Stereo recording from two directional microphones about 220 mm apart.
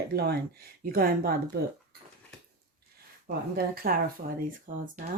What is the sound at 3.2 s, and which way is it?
Speech, 40° right (ahead or behind).